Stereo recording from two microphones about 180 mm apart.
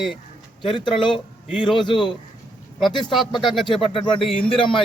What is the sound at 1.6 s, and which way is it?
Speech, 25° left (ahead or behind).